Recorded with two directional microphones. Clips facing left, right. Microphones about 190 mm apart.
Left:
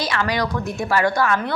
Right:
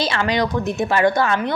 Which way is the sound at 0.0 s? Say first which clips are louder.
Right 2 dB; 25° right (ahead or behind).